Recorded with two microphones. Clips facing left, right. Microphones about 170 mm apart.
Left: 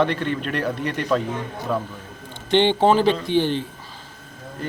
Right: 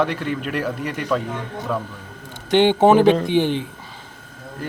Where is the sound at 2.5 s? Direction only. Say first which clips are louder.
Right 3 dB; 10° right (ahead or behind).